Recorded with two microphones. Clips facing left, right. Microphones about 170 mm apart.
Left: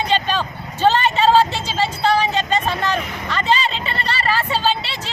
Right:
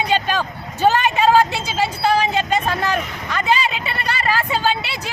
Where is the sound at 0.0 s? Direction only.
10° right (ahead or behind).